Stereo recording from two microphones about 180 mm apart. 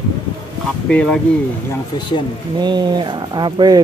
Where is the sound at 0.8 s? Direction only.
5° left (ahead or behind).